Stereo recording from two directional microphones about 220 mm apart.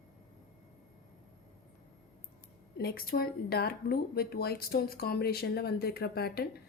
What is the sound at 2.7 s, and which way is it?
Speech, 45° left (ahead or behind).